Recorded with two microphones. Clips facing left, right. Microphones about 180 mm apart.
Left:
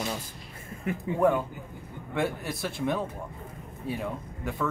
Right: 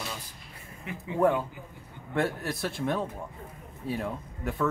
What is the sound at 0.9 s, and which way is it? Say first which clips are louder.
Speech: left 8 dB; 50° left (ahead or behind).